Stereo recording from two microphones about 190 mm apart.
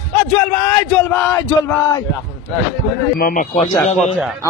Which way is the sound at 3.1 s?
45° left (ahead or behind).